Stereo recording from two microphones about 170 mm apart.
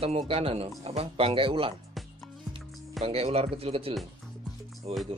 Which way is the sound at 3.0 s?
35° right (ahead or behind).